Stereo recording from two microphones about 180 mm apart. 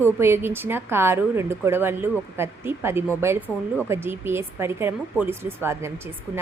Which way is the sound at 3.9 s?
15° right (ahead or behind).